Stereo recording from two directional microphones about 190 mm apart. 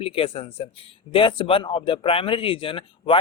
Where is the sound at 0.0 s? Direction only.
30° left (ahead or behind).